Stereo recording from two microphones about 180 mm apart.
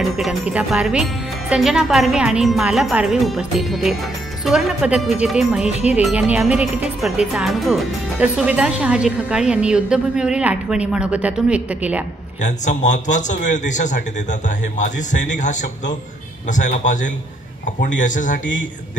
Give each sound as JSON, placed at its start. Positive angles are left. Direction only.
{"t": 0.2, "sound": "speech", "side_deg": -5}
{"t": 12.4, "sound": "a man's voice", "side_deg": 45}